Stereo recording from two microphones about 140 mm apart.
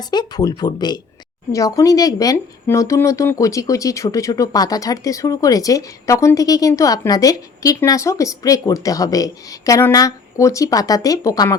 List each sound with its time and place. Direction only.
0.0 s speech: 30° left (ahead or behind)